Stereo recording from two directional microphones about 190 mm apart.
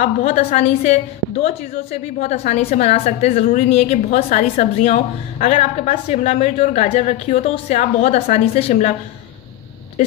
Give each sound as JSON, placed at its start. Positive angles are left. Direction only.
{"t": 0.0, "sound": "a woman's voice", "side_deg": 40}